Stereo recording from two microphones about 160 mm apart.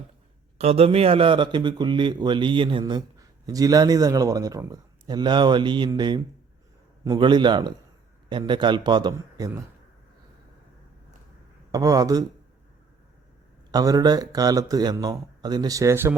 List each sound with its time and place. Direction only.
0.6 s a man's voice: 40° right (ahead or behind)
9.1 s speech: 15° right (ahead or behind)
11.7 s a man's voice: 20° right (ahead or behind)
13.7 s a man's voice: 25° right (ahead or behind)